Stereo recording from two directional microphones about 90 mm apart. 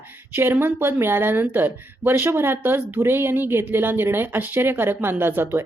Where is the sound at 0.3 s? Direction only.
25° right (ahead or behind).